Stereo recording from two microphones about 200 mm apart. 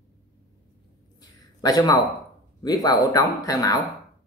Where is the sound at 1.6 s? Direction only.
20° left (ahead or behind).